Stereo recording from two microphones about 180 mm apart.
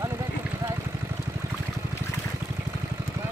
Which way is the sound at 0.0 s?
15° right (ahead or behind).